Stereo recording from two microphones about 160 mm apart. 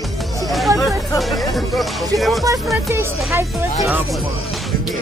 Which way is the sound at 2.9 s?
15° right (ahead or behind).